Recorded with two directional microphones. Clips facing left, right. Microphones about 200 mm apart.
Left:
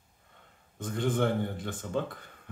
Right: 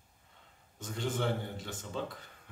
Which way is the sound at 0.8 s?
55° left (ahead or behind).